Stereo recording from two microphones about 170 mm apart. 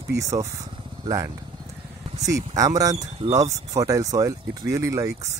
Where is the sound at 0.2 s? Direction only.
20° right (ahead or behind).